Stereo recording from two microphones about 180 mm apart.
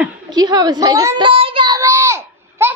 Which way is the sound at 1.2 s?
30° right (ahead or behind).